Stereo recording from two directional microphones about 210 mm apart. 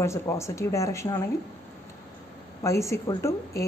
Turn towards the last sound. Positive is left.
turn(degrees=15)  # may be behind; listen again after turning